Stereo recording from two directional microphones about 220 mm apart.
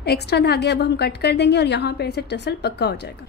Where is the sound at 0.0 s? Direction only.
50° left (ahead or behind).